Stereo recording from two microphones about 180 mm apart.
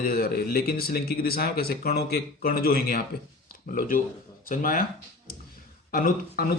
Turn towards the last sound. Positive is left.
turn(degrees=50)  # may be behind; listen again after turning